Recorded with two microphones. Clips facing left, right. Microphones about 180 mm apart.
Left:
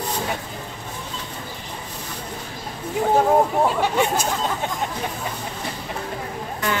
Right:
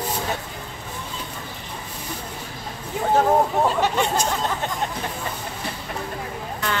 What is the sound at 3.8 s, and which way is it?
Speech, 10° left (ahead or behind).